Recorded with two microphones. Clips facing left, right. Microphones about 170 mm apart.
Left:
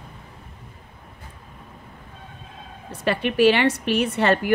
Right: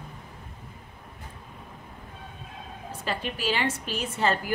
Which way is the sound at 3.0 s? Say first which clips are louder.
Left 13 dB; 70° left (ahead or behind).